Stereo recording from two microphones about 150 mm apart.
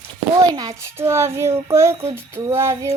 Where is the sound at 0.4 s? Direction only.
30° right (ahead or behind).